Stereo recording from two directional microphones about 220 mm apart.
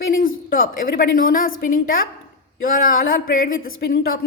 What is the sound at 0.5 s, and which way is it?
A woman's voice, 40° left (ahead or behind).